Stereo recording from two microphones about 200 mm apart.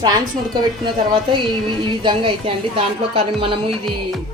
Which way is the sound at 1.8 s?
25° right (ahead or behind).